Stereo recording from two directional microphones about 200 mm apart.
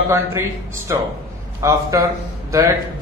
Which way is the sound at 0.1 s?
15° right (ahead or behind).